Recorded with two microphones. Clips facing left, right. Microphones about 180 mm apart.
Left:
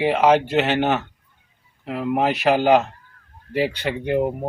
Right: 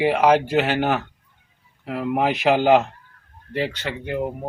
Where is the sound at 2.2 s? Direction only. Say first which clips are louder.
Even; 15° right (ahead or behind).